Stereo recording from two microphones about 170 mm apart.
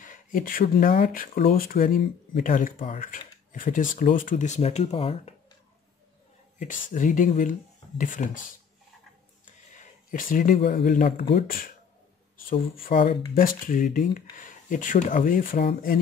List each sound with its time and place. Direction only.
0.0 s speech: 50° left (ahead or behind); by 5.3 s 35° left (ahead or behind)
6.6 s speech: 50° left (ahead or behind)
9.8 s speech: 55° left (ahead or behind)
12.9 s speech: 35° left (ahead or behind)
13.3 s speech: 55° left (ahead or behind)